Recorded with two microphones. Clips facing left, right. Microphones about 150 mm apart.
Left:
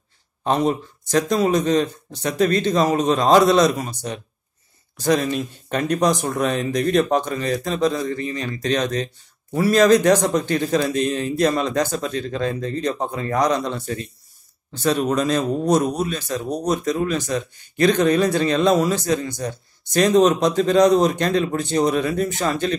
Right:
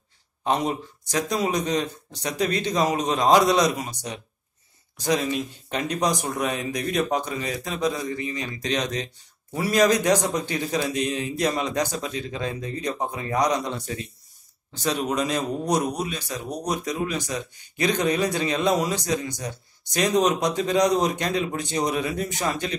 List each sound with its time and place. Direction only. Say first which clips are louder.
0.5 s speech: left 4 dB; 15° right (ahead or behind)
4.9 s speech: left 4 dB; 15° right (ahead or behind)